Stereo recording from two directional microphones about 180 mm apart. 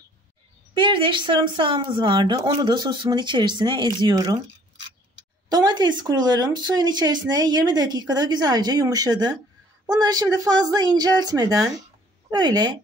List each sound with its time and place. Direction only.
0.7 s speech: 25° right (ahead or behind)
5.5 s speech: 25° right (ahead or behind)